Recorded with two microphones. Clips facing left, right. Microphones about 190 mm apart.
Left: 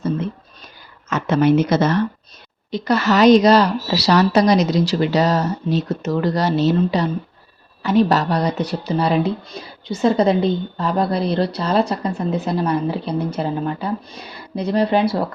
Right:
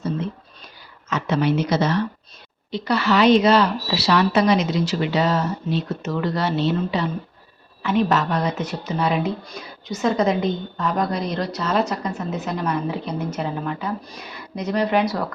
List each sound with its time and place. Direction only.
1.1 s a woman's voice: 50° left (ahead or behind); by 15.2 s 30° left (ahead or behind)